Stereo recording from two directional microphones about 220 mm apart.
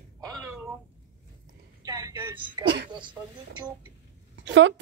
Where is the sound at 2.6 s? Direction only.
45° right (ahead or behind).